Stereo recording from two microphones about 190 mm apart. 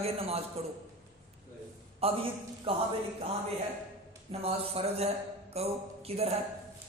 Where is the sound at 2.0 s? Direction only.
30° right (ahead or behind).